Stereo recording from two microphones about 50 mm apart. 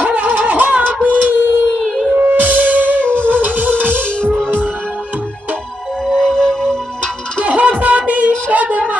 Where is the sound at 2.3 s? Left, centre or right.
Right.